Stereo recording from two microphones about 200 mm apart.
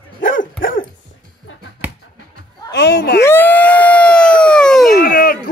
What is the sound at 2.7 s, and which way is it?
Speech, 60° left (ahead or behind).